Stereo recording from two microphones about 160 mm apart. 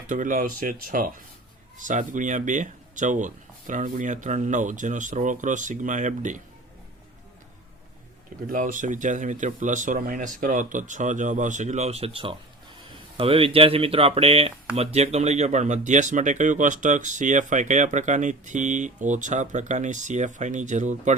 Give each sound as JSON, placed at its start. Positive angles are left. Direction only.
{"t": 0.1, "sound": "speech", "side_deg": -55}
{"t": 8.4, "sound": "speech", "side_deg": -55}